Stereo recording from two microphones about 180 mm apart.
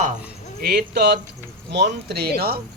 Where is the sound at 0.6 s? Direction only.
60° right (ahead or behind).